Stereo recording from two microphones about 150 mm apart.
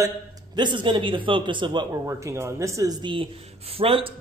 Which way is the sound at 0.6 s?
30° right (ahead or behind).